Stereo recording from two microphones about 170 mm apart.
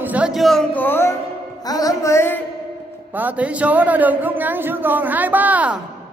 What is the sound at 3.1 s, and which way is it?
A man's voice, 10° right (ahead or behind).